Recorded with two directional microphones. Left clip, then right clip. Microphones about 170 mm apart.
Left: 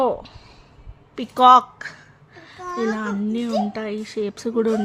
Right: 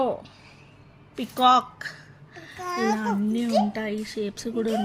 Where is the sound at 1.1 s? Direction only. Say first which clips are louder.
Left 7 dB; 40° left (ahead or behind).